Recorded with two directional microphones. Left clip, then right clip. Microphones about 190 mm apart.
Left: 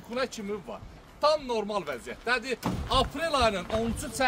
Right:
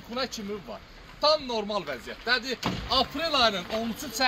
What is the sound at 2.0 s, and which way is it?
Speech, 60° left (ahead or behind).